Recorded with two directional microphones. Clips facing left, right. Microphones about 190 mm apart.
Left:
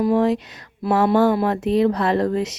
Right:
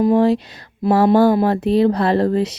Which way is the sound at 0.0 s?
30° right (ahead or behind).